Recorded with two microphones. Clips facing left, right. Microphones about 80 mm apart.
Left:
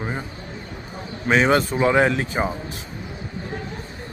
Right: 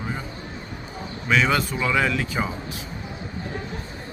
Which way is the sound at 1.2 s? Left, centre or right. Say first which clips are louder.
Left 4 dB; left.